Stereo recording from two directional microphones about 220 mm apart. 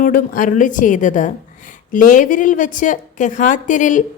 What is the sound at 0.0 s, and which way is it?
A woman's voice, 40° left (ahead or behind).